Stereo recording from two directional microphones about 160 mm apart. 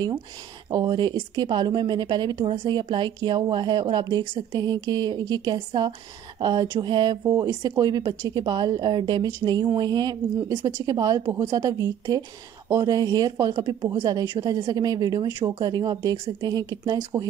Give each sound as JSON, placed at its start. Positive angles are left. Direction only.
{"t": 0.7, "sound": "speech", "side_deg": -25}